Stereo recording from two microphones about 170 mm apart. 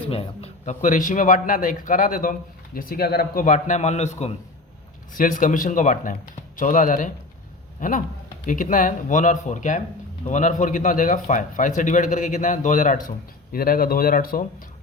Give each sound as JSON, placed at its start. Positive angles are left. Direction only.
{"t": 0.1, "sound": "a man's voice", "side_deg": 35}
{"t": 5.1, "sound": "a man's voice", "side_deg": 50}